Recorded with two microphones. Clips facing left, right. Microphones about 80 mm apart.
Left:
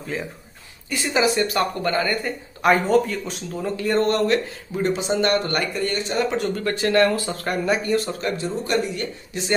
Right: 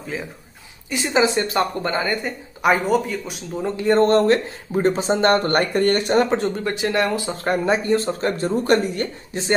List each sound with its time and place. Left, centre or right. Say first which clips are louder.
0.0 s speech: even; centre
0.8 s speech: right 2 dB; right
2.6 s speech: left 1 dB; centre
3.6 s speech: right 4 dB; right
6.3 s speech: right 3 dB; right
6.6 s speech: left 2 dB; centre; by 8.5 s right
8.5 s speech: right 6 dB; right